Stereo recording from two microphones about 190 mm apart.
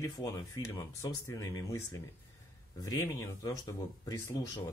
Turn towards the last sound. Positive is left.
turn(degrees=20)  # may be behind; listen again after turning